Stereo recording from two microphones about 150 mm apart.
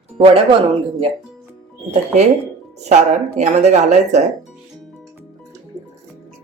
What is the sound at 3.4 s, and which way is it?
Speech, 50° right (ahead or behind).